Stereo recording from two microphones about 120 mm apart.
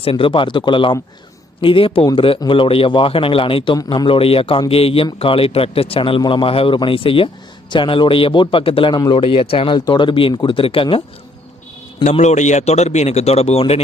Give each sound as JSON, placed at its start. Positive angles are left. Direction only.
{"t": 0.0, "sound": "a man's voice", "side_deg": 50}
{"t": 12.1, "sound": "speech", "side_deg": 70}